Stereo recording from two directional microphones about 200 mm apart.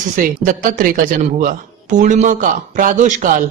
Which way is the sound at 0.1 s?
40° right (ahead or behind).